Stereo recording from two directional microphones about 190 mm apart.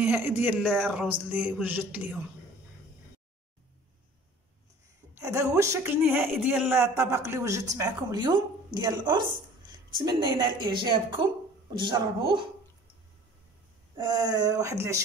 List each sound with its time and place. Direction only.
0.0 s a woman's voice: 10° right (ahead or behind)
5.1 s a woman's voice: 15° right (ahead or behind)
13.9 s a woman's voice: 20° right (ahead or behind)